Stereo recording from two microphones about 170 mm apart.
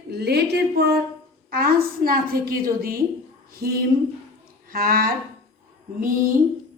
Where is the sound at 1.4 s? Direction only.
60° right (ahead or behind).